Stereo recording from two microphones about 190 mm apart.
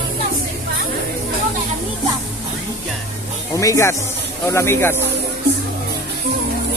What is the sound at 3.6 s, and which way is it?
Speech, 15° left (ahead or behind).